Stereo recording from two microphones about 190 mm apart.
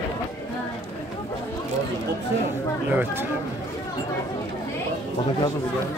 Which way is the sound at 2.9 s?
10° right (ahead or behind).